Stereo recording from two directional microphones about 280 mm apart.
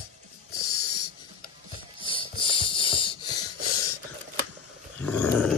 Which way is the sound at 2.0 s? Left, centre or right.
Centre.